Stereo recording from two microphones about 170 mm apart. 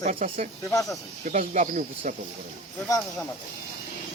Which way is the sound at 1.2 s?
50° right (ahead or behind).